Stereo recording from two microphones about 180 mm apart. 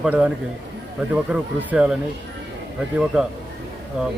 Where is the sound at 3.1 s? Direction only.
5° right (ahead or behind).